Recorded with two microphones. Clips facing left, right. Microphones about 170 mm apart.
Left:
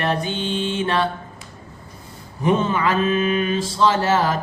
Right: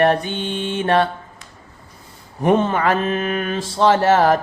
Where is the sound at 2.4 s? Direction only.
55° right (ahead or behind).